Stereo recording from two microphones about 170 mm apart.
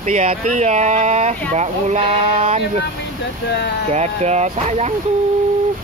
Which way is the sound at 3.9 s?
40° right (ahead or behind).